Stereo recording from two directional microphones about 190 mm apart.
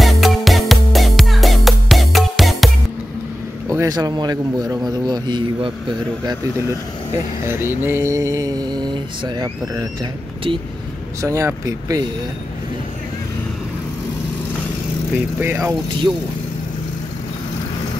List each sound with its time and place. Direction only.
0.0 s music: centre (ahead or behind)
3.6 s a man's voice: 15° right (ahead or behind)
7.4 s mantra: 10° right (ahead or behind)
11.1 s mantra: 15° right (ahead or behind)
15.4 s mantra: 15° right (ahead or behind)